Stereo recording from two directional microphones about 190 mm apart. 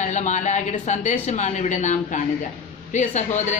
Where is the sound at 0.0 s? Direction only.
40° left (ahead or behind).